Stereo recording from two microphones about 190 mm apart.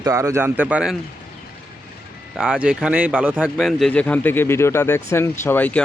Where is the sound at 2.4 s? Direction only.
5° right (ahead or behind).